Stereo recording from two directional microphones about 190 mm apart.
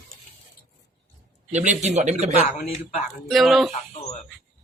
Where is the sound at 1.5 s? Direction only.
35° right (ahead or behind).